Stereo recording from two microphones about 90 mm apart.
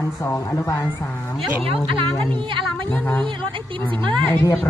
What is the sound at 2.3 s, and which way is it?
Speech, 70° right (ahead or behind).